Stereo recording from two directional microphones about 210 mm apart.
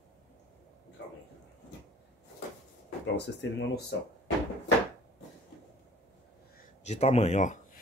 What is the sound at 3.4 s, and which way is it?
Speech, 55° left (ahead or behind).